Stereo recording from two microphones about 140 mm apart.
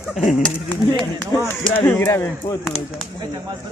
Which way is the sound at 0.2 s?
65° left (ahead or behind).